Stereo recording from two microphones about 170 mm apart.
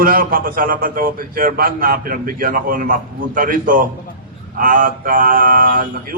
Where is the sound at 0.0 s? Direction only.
55° right (ahead or behind).